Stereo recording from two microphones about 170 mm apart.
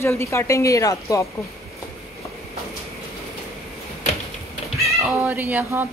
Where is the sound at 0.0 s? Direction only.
15° left (ahead or behind).